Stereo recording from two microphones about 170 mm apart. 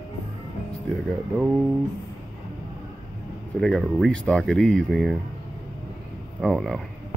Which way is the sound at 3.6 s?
Centre (ahead or behind).